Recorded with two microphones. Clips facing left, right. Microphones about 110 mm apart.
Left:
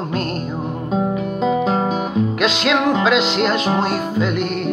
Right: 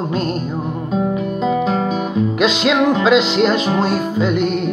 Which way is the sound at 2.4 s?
5° right (ahead or behind).